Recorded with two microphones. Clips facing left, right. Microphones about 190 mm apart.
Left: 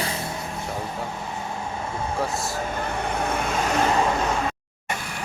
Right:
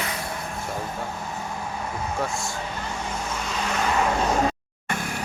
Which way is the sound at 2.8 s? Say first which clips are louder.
Left 5 dB; 60° left (ahead or behind).